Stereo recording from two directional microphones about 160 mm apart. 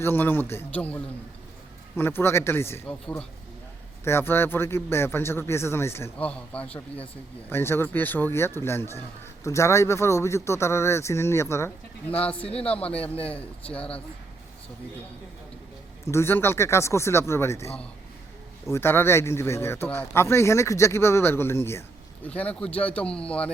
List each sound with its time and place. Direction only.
0.0 s speech: 10° left (ahead or behind)
16.0 s speech: 15° left (ahead or behind)